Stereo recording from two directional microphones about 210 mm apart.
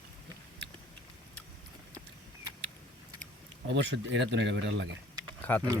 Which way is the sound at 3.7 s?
60° right (ahead or behind).